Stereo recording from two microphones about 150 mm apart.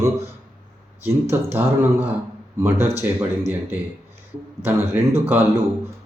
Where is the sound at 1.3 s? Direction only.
15° right (ahead or behind).